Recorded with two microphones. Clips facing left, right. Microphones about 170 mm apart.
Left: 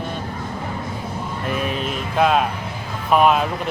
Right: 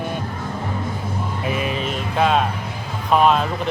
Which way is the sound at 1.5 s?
Centre (ahead or behind).